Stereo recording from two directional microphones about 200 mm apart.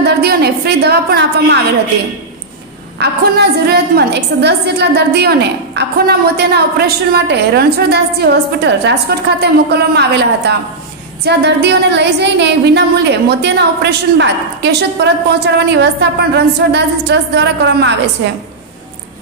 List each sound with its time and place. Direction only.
0.0 s a woman's voice: 50° right (ahead or behind)
3.0 s a woman's voice: 55° right (ahead or behind)